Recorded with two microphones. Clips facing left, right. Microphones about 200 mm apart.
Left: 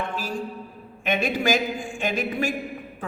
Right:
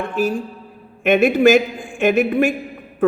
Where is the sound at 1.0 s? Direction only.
60° right (ahead or behind).